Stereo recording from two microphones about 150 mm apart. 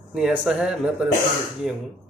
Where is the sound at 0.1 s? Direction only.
5° right (ahead or behind).